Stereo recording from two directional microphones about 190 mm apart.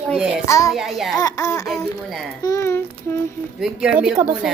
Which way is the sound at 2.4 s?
15° left (ahead or behind).